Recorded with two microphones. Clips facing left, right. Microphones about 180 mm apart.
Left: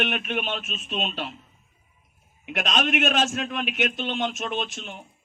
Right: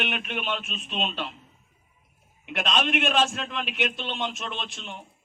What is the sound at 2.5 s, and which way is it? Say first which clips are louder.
A man's voice: left 1 dB; 45° left (ahead or behind).